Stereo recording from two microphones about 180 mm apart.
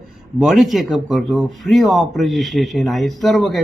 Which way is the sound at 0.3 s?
Centre (ahead or behind).